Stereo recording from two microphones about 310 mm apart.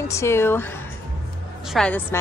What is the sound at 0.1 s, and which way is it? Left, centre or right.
Speech, centre.